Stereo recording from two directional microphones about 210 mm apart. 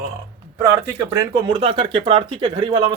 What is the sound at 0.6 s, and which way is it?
Speech, 15° right (ahead or behind).